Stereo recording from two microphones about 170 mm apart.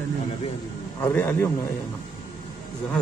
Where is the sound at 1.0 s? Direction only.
10° left (ahead or behind).